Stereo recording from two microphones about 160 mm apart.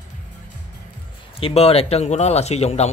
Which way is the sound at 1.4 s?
40° left (ahead or behind).